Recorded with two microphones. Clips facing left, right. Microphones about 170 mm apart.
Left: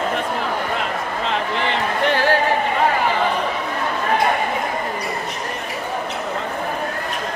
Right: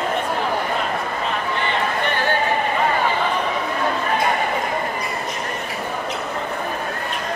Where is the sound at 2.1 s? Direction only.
90° left.